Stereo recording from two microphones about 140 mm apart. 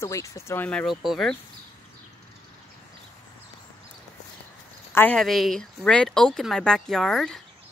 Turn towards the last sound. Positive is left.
turn(degrees=0)  # may be behind; listen again after turning